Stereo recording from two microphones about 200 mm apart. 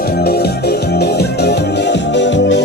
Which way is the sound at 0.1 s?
50° left (ahead or behind).